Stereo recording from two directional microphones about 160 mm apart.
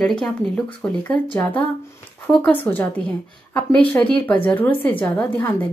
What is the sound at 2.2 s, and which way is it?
A woman's voice, 10° left (ahead or behind).